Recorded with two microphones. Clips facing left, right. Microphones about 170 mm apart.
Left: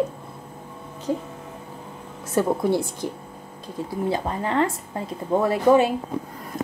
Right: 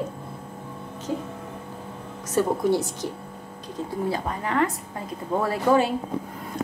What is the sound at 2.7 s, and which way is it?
Speech, 50° left (ahead or behind).